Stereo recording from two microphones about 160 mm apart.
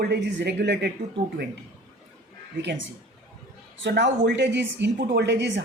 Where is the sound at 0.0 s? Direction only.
90° right.